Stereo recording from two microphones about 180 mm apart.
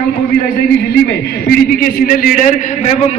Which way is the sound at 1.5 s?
55° left (ahead or behind).